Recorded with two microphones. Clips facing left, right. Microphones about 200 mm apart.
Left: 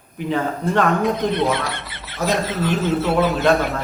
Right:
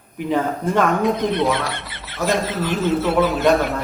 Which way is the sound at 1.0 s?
Centre (ahead or behind).